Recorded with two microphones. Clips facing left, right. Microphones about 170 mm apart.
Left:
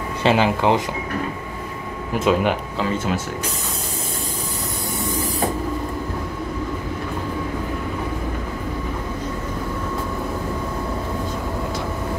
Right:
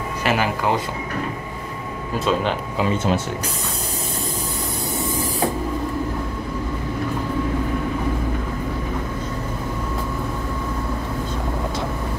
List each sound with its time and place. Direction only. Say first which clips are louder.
0.2 s speech: left 4 dB; 25° left (ahead or behind)
2.1 s speech: left 3 dB; 15° left (ahead or behind)